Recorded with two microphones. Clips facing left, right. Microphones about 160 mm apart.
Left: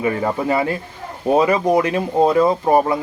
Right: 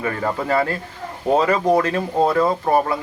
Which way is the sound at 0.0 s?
15° left (ahead or behind).